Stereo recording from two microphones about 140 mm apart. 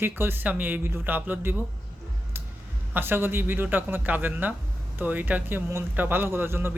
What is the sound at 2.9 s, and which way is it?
Speech, 15° right (ahead or behind).